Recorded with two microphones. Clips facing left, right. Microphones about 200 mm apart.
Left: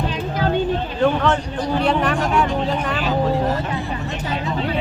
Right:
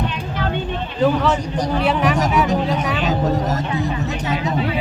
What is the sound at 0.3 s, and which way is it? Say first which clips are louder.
Vehicle: left 4 dB; 40° left (ahead or behind).